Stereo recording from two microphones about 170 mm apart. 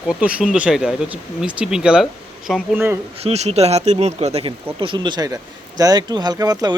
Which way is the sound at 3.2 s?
40° right (ahead or behind).